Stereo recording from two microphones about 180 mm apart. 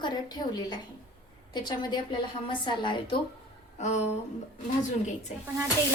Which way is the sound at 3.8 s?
40° left (ahead or behind).